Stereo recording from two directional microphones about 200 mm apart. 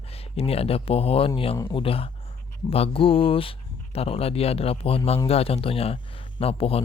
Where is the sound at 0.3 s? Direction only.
30° left (ahead or behind).